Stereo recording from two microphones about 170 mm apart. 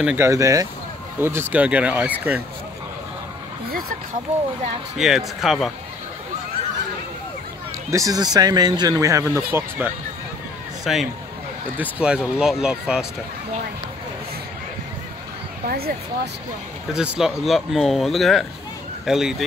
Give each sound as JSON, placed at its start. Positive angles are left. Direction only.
{"t": 0.0, "sound": "speech", "side_deg": -15}
{"t": 4.9, "sound": "speech", "side_deg": 0}
{"t": 7.9, "sound": "speech", "side_deg": -20}
{"t": 10.8, "sound": "a man's voice", "side_deg": 0}
{"t": 15.6, "sound": "speech", "side_deg": -60}
{"t": 16.9, "sound": "speech", "side_deg": -5}